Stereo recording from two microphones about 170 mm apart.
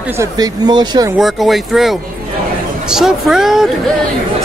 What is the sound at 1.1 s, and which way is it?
Speech, centre (ahead or behind).